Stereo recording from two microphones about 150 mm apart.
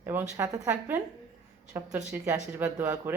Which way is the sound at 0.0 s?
15° right (ahead or behind).